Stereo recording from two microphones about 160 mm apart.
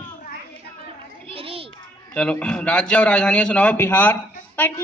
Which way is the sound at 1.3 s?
35° right (ahead or behind).